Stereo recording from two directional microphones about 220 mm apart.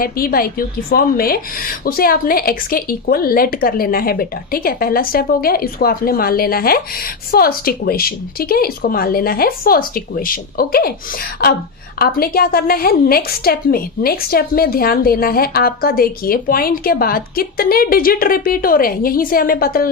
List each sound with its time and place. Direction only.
0.0 s a woman's voice: 40° left (ahead or behind)